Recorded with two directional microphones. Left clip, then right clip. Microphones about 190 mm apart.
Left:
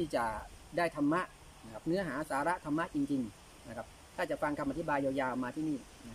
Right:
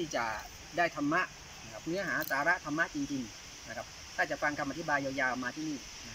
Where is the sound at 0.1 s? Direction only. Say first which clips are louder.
Even; 20° left (ahead or behind).